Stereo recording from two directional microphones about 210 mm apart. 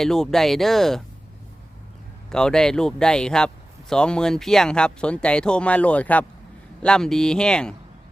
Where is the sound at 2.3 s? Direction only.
5° left (ahead or behind).